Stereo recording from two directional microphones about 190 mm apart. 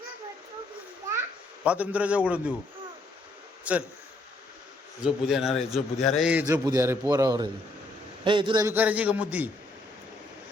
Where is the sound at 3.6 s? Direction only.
5° right (ahead or behind).